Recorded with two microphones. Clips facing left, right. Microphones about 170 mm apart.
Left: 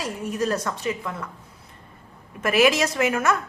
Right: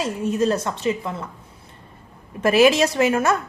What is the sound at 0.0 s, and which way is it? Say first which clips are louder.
A woman's voice: right 5 dB; 25° right (ahead or behind).